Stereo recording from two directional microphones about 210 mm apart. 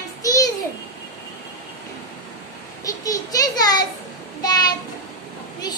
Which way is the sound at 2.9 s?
15° left (ahead or behind).